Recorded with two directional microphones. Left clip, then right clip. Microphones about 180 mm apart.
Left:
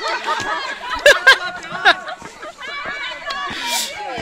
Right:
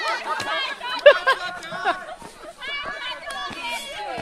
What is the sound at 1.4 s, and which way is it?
Snicker, 30° left (ahead or behind).